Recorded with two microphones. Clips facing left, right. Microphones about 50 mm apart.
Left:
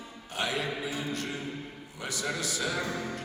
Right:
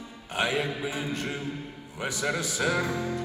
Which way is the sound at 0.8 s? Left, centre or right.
Right.